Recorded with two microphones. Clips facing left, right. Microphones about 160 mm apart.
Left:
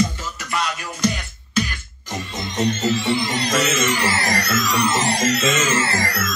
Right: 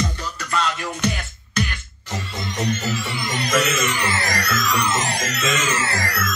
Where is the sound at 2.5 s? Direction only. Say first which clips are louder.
Left 4 dB; 25° left (ahead or behind).